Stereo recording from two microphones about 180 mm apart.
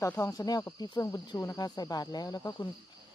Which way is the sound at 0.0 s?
15° left (ahead or behind).